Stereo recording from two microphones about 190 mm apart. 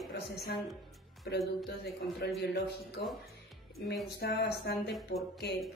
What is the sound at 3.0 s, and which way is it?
A woman's voice, 60° left (ahead or behind).